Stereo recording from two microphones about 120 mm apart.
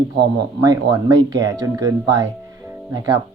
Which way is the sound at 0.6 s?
30° right (ahead or behind).